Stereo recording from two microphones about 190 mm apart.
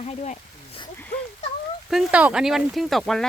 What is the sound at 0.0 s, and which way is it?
Speech, 35° left (ahead or behind).